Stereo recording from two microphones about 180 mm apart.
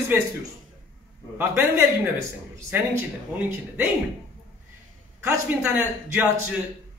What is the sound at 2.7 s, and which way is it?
A man's voice, 10° right (ahead or behind).